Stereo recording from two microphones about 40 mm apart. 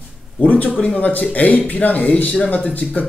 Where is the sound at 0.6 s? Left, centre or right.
Left.